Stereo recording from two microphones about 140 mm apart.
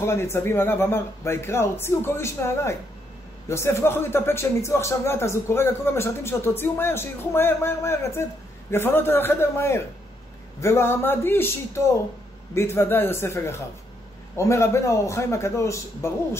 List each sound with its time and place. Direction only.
0.0 s speech: 20° left (ahead or behind)
12.5 s a man's voice: 15° left (ahead or behind)